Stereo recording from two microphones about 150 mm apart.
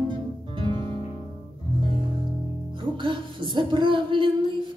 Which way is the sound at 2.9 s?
30° right (ahead or behind).